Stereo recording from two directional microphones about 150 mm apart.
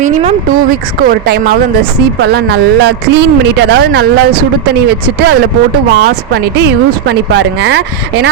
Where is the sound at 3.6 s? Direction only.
90° right.